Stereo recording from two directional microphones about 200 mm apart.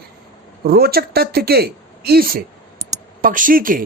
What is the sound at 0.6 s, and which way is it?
Speech, 50° right (ahead or behind).